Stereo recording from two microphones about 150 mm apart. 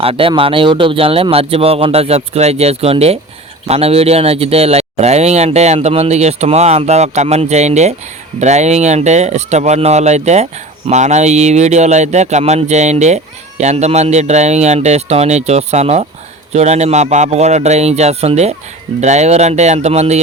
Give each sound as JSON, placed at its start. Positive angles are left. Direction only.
{"t": 0.0, "sound": "speech", "side_deg": -40}